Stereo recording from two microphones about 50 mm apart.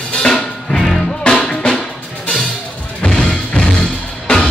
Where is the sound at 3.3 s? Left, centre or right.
Centre.